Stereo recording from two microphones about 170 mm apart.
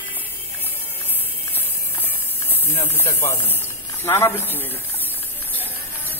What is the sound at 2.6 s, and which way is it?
Speech, 15° left (ahead or behind).